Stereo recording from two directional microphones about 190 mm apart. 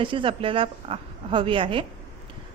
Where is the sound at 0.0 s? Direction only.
25° right (ahead or behind).